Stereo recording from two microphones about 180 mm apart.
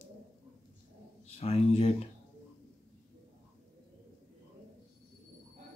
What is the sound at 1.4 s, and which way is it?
Speech, 35° left (ahead or behind).